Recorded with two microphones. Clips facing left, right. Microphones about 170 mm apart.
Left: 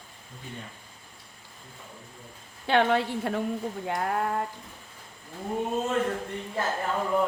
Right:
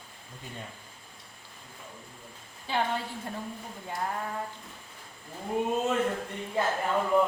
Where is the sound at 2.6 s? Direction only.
70° left (ahead or behind).